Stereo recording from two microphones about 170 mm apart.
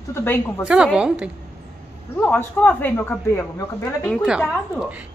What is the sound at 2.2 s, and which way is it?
Speech, 10° left (ahead or behind).